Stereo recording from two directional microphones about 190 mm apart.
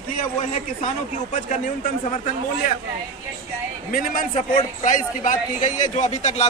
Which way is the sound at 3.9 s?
45° left (ahead or behind).